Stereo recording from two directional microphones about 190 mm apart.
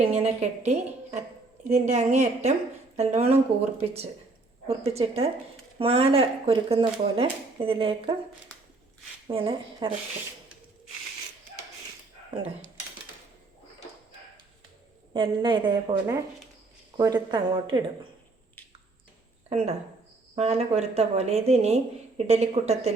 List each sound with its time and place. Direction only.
0.1 s a woman's voice: 35° right (ahead or behind)
9.2 s speech: 30° right (ahead or behind)
15.1 s speech: 25° right (ahead or behind)
19.5 s a woman's voice: 35° right (ahead or behind)